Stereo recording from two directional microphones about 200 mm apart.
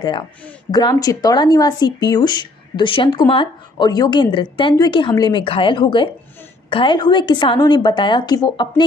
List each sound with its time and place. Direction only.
0.7 s speech: 20° left (ahead or behind)